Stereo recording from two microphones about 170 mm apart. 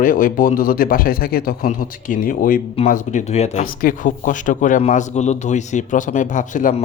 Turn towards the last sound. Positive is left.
turn(degrees=50)  # may be behind; listen again after turning